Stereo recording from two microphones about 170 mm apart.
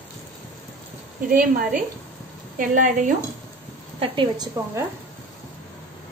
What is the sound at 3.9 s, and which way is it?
Speech, 25° right (ahead or behind).